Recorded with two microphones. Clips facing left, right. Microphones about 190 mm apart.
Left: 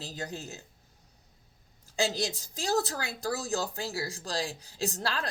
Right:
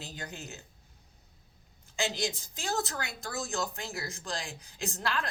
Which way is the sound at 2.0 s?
35° left (ahead or behind).